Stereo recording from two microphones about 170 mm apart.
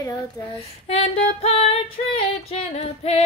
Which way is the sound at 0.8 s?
35° left (ahead or behind).